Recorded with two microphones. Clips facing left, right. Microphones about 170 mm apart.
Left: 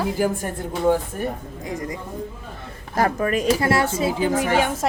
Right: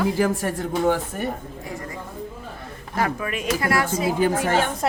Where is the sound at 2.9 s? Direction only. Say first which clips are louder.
Left 5 dB; 40° left (ahead or behind).